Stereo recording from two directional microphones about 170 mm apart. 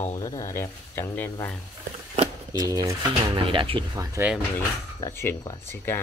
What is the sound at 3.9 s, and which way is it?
Speech, 15° right (ahead or behind).